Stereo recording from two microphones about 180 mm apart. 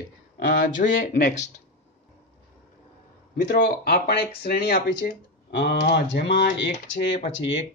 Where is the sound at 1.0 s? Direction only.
50° left (ahead or behind).